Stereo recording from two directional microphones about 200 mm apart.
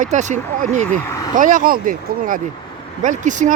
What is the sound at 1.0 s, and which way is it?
Vehicle, 15° left (ahead or behind).